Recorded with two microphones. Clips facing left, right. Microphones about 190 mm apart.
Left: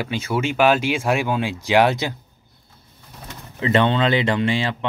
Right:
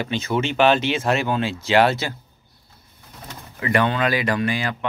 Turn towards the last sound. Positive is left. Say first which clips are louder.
# left 2 dB
turn(degrees=25)  # may be behind; listen again after turning